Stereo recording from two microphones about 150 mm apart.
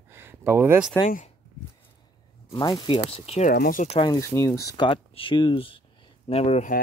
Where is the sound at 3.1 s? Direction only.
45° left (ahead or behind).